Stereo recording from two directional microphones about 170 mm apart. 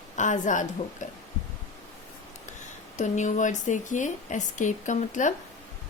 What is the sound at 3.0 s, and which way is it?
Speech, 45° left (ahead or behind).